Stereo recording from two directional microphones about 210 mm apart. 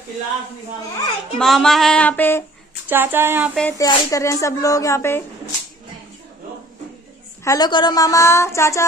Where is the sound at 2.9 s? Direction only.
10° right (ahead or behind).